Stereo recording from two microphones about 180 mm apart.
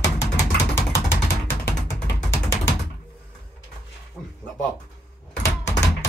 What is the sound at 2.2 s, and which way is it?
Ratchet, 15° left (ahead or behind).